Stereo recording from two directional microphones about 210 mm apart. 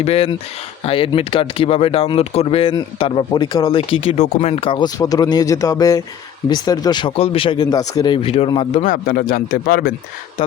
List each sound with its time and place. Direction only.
0.0 s speech: 30° left (ahead or behind); by 9.9 s 45° left (ahead or behind)